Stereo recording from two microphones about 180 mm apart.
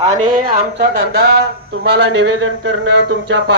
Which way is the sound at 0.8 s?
65° right (ahead or behind).